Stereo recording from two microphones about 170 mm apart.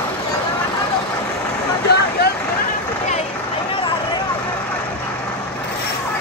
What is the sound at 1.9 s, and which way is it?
Vehicle, 75° left (ahead or behind).